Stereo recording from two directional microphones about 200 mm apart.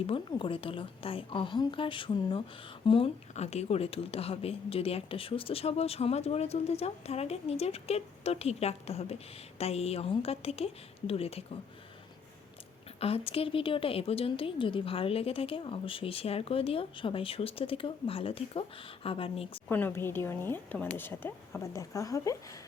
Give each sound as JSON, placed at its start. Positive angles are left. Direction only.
{"t": 0.1, "sound": "a woman's voice", "side_deg": 25}
{"t": 13.0, "sound": "a woman's voice", "side_deg": 30}
{"t": 19.6, "sound": "speech", "side_deg": 10}